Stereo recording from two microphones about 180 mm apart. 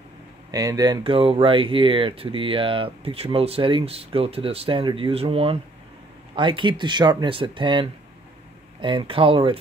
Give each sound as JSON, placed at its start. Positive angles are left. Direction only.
{"t": 0.5, "sound": "speech", "side_deg": -20}